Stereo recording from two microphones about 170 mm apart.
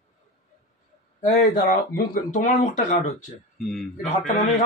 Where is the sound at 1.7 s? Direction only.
55° left (ahead or behind).